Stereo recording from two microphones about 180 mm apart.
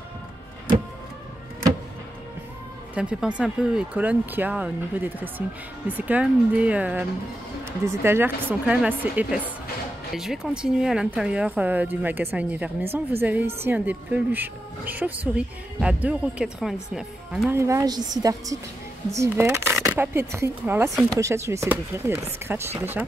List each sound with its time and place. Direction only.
2.9 s speech: 5° right (ahead or behind)
17.5 s a woman's voice: 15° right (ahead or behind)